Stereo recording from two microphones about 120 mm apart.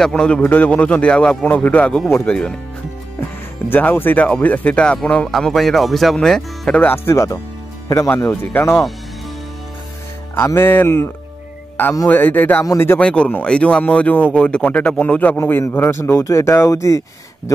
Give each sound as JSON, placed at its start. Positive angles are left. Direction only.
{"t": 0.0, "sound": "speech", "side_deg": 5}
{"t": 6.8, "sound": "speech", "side_deg": 20}
{"t": 10.3, "sound": "speech", "side_deg": 20}
{"t": 12.1, "sound": "speech", "side_deg": 15}